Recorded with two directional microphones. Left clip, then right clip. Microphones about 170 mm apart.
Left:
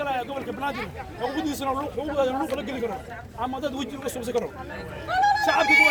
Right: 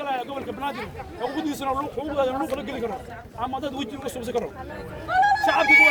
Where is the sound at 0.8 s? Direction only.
30° right (ahead or behind).